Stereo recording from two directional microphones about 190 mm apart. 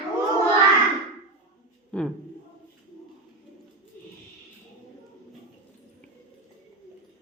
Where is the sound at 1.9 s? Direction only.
5° left (ahead or behind).